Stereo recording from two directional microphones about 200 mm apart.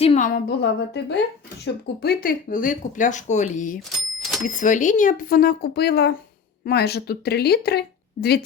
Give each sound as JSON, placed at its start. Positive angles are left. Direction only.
{"t": 0.0, "sound": "a sound", "side_deg": 30}
{"t": 0.4, "sound": "speech", "side_deg": 55}
{"t": 3.8, "sound": "cash register", "side_deg": 0}
{"t": 4.4, "sound": "speech", "side_deg": 40}